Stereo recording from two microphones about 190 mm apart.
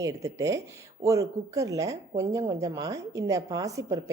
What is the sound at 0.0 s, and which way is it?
A woman's voice, 15° right (ahead or behind).